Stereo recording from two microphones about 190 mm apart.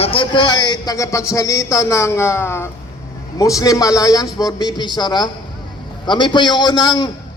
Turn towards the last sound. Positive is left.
turn(degrees=25)  # may be behind; listen again after turning